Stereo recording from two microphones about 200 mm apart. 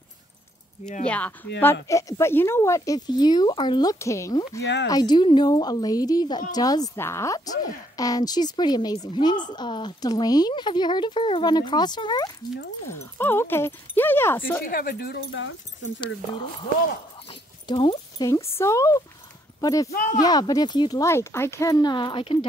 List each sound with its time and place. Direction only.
1.0 s speech: 5° left (ahead or behind)
14.7 s speech: 45° left (ahead or behind); by 15.9 s 70° left (ahead or behind)
17.3 s speech: 25° left (ahead or behind)
19.9 s speech: 45° left (ahead or behind)
20.2 s speech: 20° left (ahead or behind)